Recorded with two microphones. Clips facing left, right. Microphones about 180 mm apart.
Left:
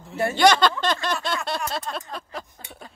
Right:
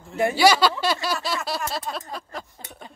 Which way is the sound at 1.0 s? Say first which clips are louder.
Even; 5° right (ahead or behind).